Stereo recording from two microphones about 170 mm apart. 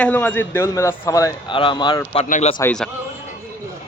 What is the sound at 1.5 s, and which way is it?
Speech, 30° left (ahead or behind).